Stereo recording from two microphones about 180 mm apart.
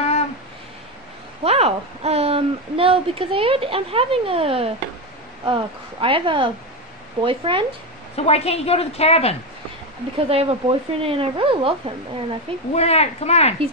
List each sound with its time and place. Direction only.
1.4 s speech: 35° right (ahead or behind)
8.2 s a woman's voice: 35° left (ahead or behind)
10.1 s speech: 30° right (ahead or behind)
12.7 s a woman's voice: 35° left (ahead or behind)